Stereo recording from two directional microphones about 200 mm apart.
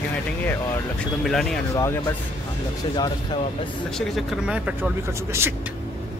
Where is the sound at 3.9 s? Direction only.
Centre (ahead or behind).